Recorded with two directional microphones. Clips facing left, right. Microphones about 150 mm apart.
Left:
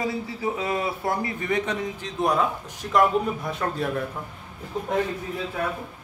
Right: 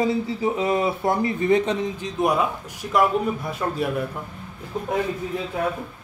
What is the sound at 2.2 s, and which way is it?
A man's voice, 10° right (ahead or behind).